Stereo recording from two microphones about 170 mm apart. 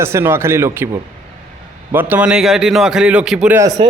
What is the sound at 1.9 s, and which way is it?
A man's voice, 10° right (ahead or behind).